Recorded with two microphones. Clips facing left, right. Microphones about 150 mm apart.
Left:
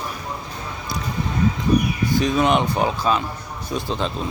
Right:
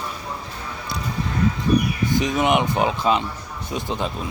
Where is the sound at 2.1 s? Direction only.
20° right (ahead or behind).